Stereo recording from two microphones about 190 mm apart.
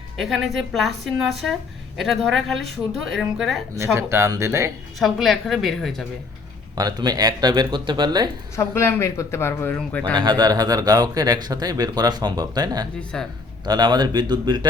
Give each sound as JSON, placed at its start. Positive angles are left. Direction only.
{"t": 0.2, "sound": "a woman's voice", "side_deg": 0}
{"t": 3.9, "sound": "speech", "side_deg": -15}
{"t": 4.9, "sound": "a woman's voice", "side_deg": 0}
{"t": 6.7, "sound": "speech", "side_deg": -20}
{"t": 8.5, "sound": "speech", "side_deg": 15}
{"t": 10.2, "sound": "speech", "side_deg": -20}
{"t": 13.0, "sound": "a woman's voice", "side_deg": 5}
{"t": 13.7, "sound": "speech", "side_deg": -20}